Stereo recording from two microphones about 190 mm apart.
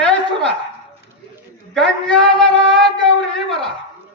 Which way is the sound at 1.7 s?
5° left (ahead or behind).